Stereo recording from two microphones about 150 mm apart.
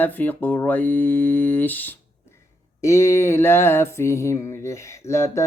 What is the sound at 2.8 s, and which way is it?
Mantra, 20° left (ahead or behind).